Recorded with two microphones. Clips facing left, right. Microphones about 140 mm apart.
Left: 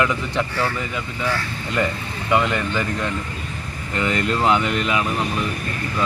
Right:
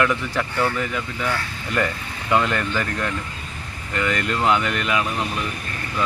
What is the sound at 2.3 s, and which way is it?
Speech, 15° left (ahead or behind).